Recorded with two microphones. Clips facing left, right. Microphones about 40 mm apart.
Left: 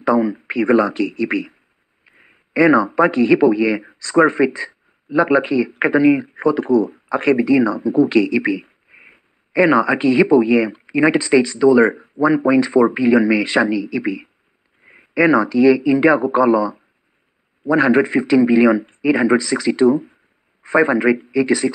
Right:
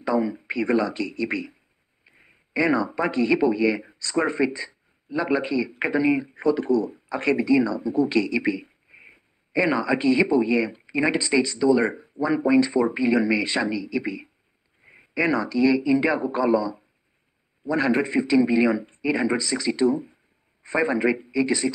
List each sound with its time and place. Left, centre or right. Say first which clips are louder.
0.0 s speech: left 7 dB; left
2.0 s a sound: left 5 dB; left
2.5 s speech: left 9 dB; left